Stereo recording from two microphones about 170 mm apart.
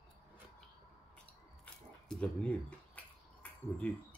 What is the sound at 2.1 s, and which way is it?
Speech, 5° left (ahead or behind).